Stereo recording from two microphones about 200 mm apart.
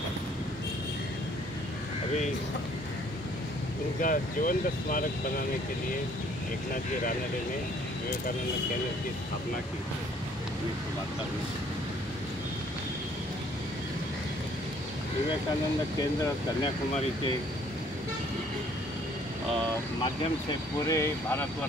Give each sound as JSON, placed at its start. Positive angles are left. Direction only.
{"t": 4.0, "sound": "speech", "side_deg": 45}
{"t": 20.8, "sound": "speech", "side_deg": 15}